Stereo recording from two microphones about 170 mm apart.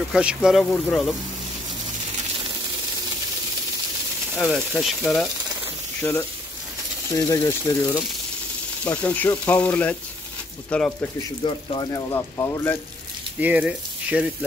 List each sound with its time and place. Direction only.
0.1 s speech: 5° right (ahead or behind)
4.4 s speech: centre (ahead or behind)
6.0 s speech: 15° left (ahead or behind)
11.4 s speech: 25° left (ahead or behind)
13.4 s speech: 10° right (ahead or behind)